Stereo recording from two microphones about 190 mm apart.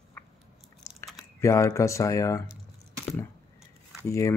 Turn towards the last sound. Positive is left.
turn(degrees=15)  # may be behind; listen again after turning